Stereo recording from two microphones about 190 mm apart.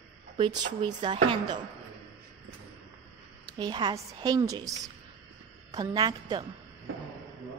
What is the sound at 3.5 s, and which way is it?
Speech, 20° right (ahead or behind).